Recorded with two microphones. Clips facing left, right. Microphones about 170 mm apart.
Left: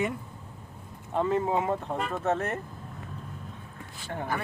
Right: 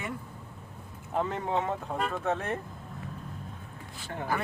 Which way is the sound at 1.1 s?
5° left (ahead or behind).